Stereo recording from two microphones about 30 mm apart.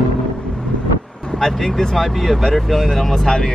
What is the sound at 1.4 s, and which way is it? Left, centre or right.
Speech, centre.